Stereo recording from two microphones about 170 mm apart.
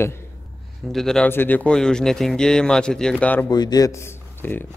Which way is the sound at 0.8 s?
Centre (ahead or behind).